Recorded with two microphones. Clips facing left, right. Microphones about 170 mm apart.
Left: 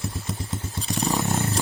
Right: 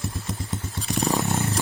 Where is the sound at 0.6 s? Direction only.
20° left (ahead or behind).